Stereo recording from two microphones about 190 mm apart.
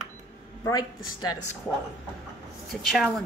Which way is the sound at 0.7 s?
20° left (ahead or behind).